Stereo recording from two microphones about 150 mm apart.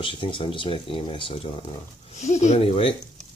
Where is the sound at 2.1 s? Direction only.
50° left (ahead or behind).